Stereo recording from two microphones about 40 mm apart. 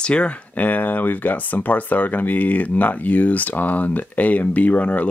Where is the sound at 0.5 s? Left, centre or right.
Left.